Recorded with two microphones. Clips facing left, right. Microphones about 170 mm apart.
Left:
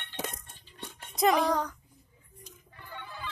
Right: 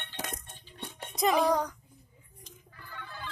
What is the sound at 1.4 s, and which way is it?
Speech, 10° right (ahead or behind).